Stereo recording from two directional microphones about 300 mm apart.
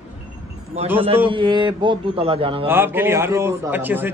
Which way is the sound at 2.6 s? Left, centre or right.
Centre.